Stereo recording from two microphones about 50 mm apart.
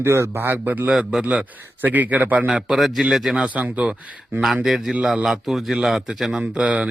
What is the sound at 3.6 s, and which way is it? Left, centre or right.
Speech, right.